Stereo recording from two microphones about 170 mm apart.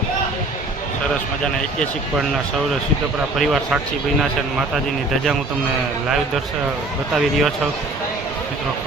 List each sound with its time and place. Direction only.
3.3 s speech: centre (ahead or behind)
7.1 s speech: centre (ahead or behind)